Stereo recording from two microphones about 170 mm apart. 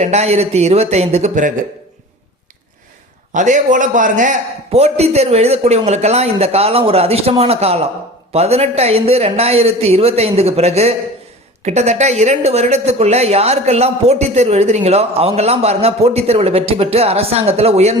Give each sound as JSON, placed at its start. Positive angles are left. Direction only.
{"t": 0.0, "sound": "speech", "side_deg": -40}
{"t": 3.3, "sound": "speech", "side_deg": -50}